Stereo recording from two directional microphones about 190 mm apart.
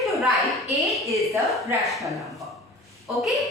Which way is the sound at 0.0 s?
Centre (ahead or behind).